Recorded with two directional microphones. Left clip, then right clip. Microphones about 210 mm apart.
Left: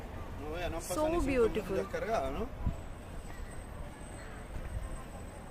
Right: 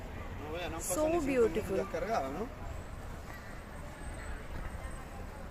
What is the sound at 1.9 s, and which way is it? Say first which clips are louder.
Speech: left 2 dB; 15° left (ahead or behind).